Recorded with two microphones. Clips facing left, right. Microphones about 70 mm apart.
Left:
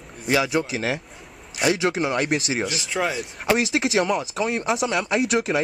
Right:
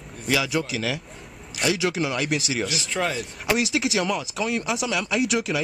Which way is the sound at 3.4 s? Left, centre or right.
Left.